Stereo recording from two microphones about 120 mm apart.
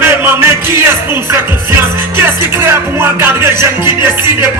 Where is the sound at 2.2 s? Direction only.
20° right (ahead or behind).